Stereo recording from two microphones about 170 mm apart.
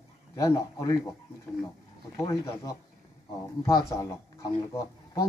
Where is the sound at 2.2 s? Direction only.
15° left (ahead or behind).